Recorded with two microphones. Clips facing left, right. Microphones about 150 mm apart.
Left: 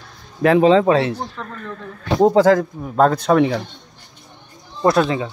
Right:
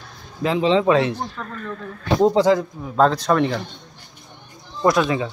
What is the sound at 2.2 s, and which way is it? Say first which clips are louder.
Speech: left 4 dB; 50° left (ahead or behind).